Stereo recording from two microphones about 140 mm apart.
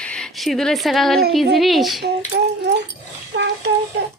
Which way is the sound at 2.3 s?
90° right.